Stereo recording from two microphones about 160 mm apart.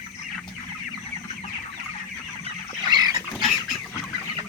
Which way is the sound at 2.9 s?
25° right (ahead or behind).